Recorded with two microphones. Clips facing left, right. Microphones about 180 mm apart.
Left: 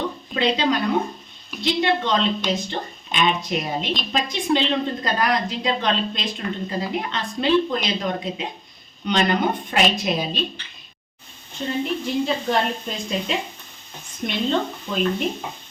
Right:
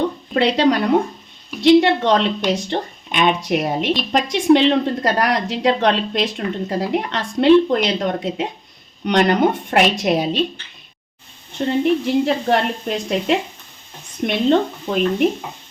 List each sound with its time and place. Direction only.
0.3 s a woman's voice: 70° right (ahead or behind)
11.5 s a woman's voice: 65° right (ahead or behind)